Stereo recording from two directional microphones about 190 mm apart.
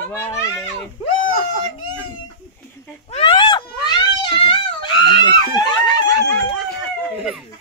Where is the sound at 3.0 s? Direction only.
30° left (ahead or behind).